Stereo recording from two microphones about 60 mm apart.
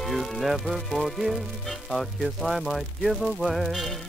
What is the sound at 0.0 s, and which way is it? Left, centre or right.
Speech, centre.